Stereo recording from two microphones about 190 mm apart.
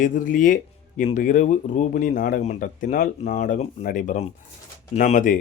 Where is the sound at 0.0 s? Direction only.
45° left (ahead or behind).